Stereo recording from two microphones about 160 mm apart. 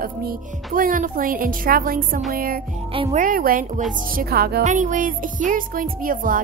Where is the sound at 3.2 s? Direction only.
60° right (ahead or behind).